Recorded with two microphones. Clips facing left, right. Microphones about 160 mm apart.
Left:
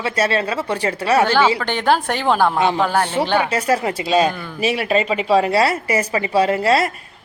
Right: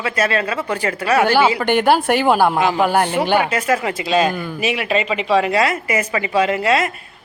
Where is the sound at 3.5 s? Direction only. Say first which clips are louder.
Even; 35° left (ahead or behind).